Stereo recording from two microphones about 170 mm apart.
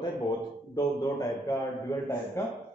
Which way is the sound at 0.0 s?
25° left (ahead or behind).